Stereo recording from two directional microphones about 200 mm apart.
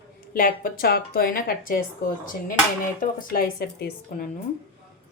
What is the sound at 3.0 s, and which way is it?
A woman's voice, 45° left (ahead or behind).